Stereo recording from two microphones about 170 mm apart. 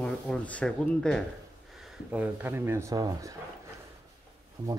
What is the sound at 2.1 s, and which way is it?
Speech, 10° right (ahead or behind).